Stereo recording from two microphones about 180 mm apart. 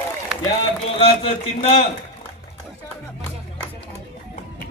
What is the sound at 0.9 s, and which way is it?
Speech, 35° left (ahead or behind).